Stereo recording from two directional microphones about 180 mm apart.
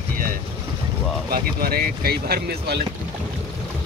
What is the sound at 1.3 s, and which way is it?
Speech, 55° right (ahead or behind).